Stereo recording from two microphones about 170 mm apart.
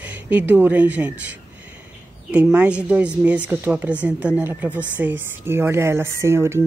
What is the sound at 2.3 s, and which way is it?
Speech, 10° right (ahead or behind).